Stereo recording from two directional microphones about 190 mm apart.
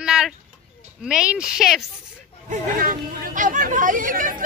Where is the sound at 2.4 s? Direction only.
45° right (ahead or behind).